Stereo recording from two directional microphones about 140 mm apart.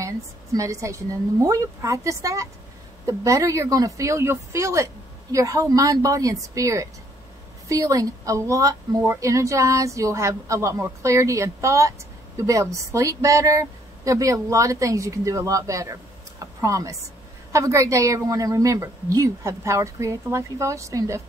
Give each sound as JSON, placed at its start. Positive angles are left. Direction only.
{"t": 0.0, "sound": "a woman's voice", "side_deg": -25}